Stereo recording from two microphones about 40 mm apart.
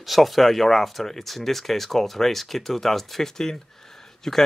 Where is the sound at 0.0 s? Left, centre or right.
Centre.